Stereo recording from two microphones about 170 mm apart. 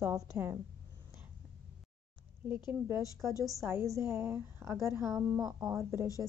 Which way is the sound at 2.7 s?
15° right (ahead or behind).